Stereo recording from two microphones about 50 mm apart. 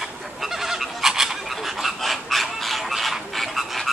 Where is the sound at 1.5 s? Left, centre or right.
Centre.